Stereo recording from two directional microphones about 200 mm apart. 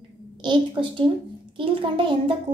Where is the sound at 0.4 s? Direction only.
25° right (ahead or behind).